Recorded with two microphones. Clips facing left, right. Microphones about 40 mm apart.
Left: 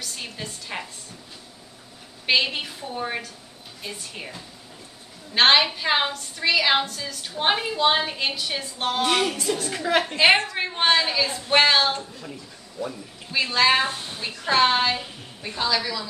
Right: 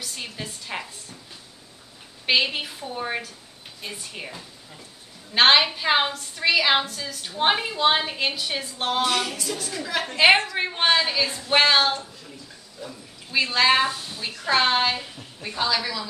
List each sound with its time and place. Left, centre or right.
0.0 s a sound: centre
2.2 s a woman's voice: centre
9.0 s music: left
10.0 s a woman's voice: centre
13.3 s a woman's voice: centre
13.8 s a woman's voice: left
14.4 s a woman's voice: centre